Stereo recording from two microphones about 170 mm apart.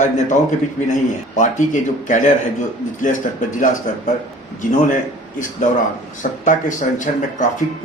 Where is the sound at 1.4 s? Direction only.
50° left (ahead or behind).